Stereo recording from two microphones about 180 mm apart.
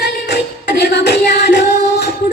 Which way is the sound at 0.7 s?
70° left (ahead or behind).